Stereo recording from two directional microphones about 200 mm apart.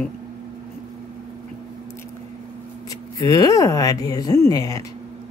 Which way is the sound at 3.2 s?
20° left (ahead or behind).